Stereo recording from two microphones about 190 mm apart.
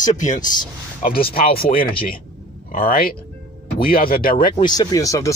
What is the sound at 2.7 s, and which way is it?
Speech, 45° left (ahead or behind).